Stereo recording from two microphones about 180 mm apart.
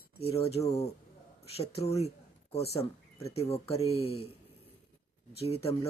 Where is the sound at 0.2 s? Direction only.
35° left (ahead or behind).